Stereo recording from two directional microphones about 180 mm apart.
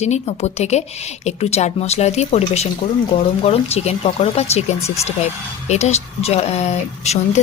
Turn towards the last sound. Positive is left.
turn(degrees=35)  # may be behind; listen again after turning